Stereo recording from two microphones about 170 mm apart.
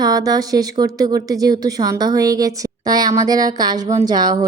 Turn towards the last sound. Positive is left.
turn(degrees=-25)  # may be behind; listen again after turning